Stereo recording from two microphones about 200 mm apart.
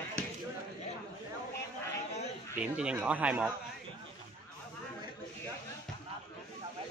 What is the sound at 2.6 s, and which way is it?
Speech, 5° right (ahead or behind).